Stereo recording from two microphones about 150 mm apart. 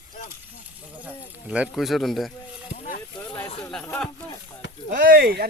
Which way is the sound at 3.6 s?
5° left (ahead or behind).